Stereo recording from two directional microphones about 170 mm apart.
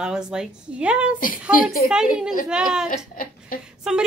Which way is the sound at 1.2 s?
55° left (ahead or behind).